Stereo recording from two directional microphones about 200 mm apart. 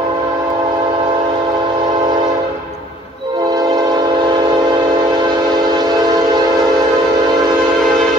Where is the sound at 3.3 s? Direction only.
20° right (ahead or behind).